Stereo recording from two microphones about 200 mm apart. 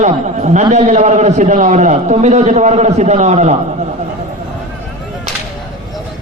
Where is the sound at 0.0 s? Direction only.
35° right (ahead or behind).